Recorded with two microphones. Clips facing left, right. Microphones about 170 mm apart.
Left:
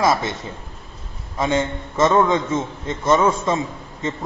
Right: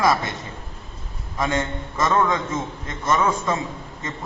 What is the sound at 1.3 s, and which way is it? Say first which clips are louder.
A man's voice: left 3 dB; 25° left (ahead or behind).